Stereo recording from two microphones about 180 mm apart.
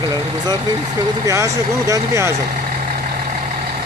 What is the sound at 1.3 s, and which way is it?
Speech, 15° right (ahead or behind).